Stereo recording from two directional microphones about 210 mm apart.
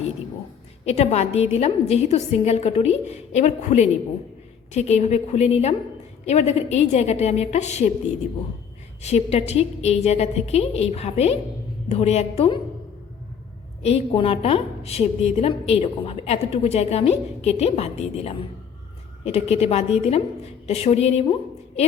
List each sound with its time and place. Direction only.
0.9 s a woman's voice: 30° left (ahead or behind)
9.0 s a woman's voice: 30° left (ahead or behind)
13.8 s a woman's voice: 25° left (ahead or behind)